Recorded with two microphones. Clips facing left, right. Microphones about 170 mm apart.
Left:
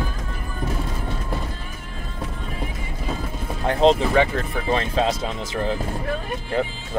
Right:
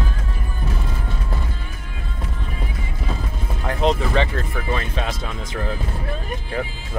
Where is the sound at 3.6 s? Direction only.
30° left (ahead or behind).